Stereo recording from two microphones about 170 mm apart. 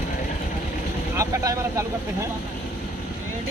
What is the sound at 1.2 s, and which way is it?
Speech, 15° right (ahead or behind).